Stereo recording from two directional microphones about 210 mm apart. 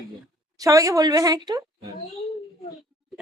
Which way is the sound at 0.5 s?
15° right (ahead or behind).